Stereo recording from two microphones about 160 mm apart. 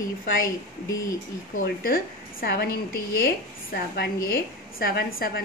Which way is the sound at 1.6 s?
65° left (ahead or behind).